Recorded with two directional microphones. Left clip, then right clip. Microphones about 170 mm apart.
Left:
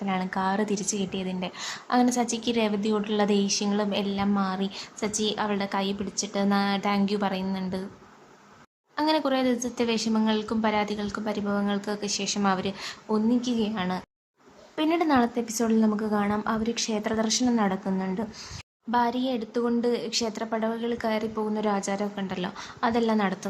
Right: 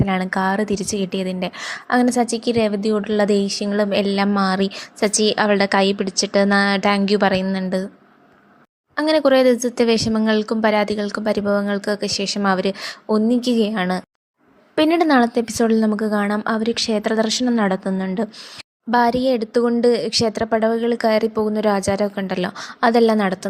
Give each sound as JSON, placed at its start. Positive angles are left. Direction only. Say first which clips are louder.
{"t": 0.0, "sound": "a woman's voice", "louder": "right 8 dB", "side_deg": -35}
{"t": 9.0, "sound": "a woman's voice", "louder": "right 10 dB", "side_deg": -35}